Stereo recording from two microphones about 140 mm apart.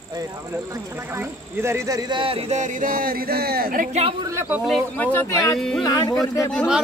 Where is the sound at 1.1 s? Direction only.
20° right (ahead or behind); by 3.9 s 90° right.